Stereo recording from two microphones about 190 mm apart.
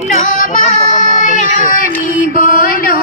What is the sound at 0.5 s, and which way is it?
Child singing, 40° left (ahead or behind).